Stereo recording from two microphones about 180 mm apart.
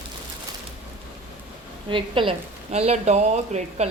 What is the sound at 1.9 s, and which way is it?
A woman's voice, 30° right (ahead or behind).